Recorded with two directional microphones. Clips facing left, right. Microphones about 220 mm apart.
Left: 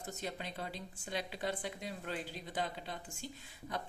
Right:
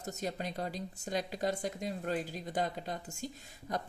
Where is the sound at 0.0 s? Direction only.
40° right (ahead or behind).